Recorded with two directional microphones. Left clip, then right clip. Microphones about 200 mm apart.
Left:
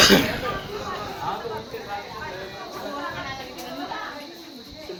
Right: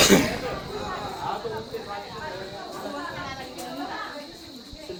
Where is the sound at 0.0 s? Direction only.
20° right (ahead or behind).